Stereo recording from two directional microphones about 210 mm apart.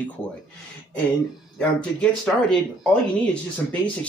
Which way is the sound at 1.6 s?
5° left (ahead or behind).